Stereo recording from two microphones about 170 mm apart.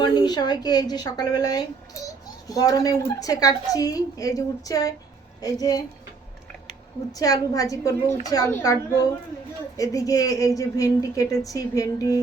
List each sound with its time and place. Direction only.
0.0 s a woman's voice: 25° left (ahead or behind)
7.1 s a woman's voice: 20° left (ahead or behind)